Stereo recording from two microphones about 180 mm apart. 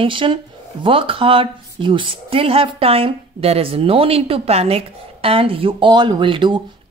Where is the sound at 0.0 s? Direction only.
30° right (ahead or behind).